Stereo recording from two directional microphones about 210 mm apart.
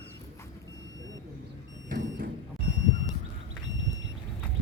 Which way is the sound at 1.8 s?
50° right (ahead or behind).